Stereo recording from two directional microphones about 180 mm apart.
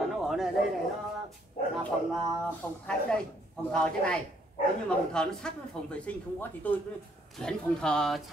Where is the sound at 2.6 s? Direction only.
5° left (ahead or behind).